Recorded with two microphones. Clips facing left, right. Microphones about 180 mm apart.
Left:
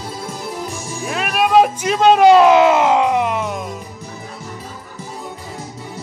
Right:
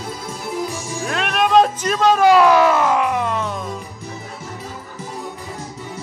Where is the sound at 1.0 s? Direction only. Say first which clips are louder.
Left 1 dB; 5° left (ahead or behind).